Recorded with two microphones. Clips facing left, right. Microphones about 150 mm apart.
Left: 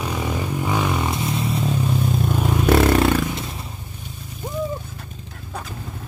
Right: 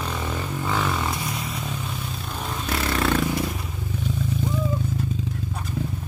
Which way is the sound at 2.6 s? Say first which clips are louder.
Left 12 dB; 55° left (ahead or behind).